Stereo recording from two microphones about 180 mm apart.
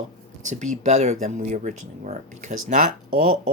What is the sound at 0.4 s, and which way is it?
Speech, 45° right (ahead or behind).